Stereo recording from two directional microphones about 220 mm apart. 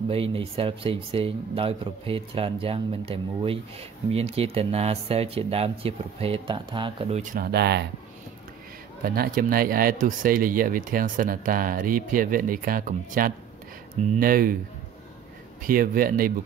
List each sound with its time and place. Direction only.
0.1 s speech: 25° right (ahead or behind); by 7.8 s 50° right (ahead or behind)
9.0 s speech: 40° right (ahead or behind)
15.6 s speech: 40° right (ahead or behind)